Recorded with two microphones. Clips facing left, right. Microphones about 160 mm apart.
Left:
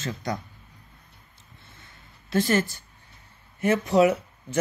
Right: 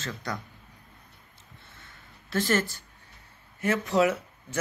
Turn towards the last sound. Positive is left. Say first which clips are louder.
# left 4 dB
turn(degrees=20)  # may be behind; listen again after turning